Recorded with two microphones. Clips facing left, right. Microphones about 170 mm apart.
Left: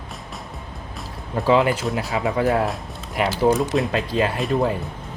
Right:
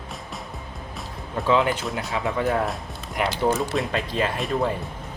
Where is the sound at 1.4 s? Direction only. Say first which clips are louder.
Left 3 dB; 5° left (ahead or behind).